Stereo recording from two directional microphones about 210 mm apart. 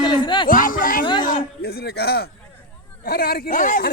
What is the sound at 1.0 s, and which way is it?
Speech, 20° left (ahead or behind).